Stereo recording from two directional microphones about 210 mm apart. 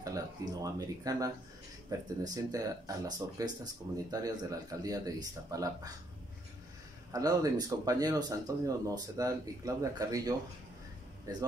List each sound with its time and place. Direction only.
0.0 s speech: 15° right (ahead or behind)
7.1 s speech: 15° right (ahead or behind)